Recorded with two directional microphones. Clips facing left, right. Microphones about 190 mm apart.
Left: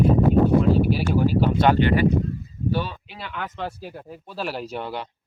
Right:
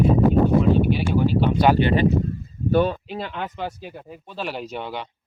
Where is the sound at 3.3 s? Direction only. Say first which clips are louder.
Right 2 dB; 20° right (ahead or behind).